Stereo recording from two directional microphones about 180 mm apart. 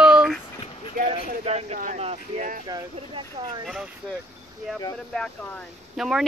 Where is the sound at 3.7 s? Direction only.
5° right (ahead or behind).